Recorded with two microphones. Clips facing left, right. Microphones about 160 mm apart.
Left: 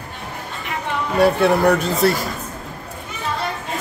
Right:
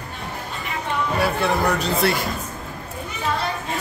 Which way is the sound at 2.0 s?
40° left (ahead or behind).